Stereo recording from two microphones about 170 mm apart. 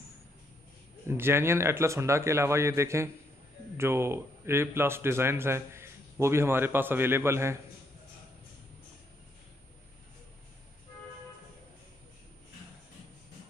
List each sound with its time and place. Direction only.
1.0 s a man's voice: 15° right (ahead or behind)